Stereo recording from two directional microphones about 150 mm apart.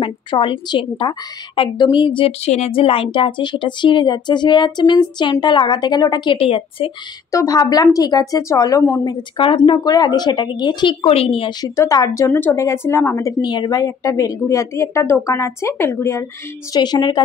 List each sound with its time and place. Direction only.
0.0 s a woman's voice: 35° left (ahead or behind)
7.2 s a woman's voice: 25° left (ahead or behind); by 11.5 s 40° left (ahead or behind)
11.6 s a woman's voice: 20° left (ahead or behind)